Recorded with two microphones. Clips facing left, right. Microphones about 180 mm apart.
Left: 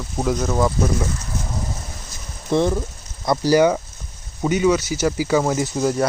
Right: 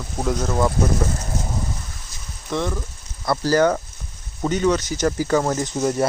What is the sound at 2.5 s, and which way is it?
Speech, 30° left (ahead or behind).